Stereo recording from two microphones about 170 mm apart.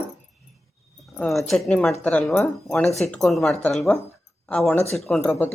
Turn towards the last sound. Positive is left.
turn(degrees=0)  # may be behind; listen again after turning